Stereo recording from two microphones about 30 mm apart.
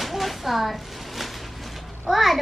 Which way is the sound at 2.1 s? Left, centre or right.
Centre.